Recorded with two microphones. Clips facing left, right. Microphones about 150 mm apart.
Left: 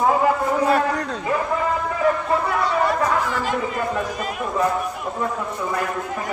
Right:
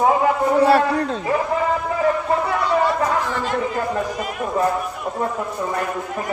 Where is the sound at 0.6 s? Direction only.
30° right (ahead or behind).